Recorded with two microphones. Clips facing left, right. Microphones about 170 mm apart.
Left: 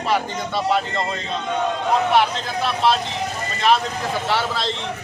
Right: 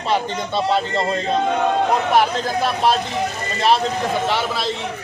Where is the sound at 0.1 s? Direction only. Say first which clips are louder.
Right 2 dB; 30° right (ahead or behind).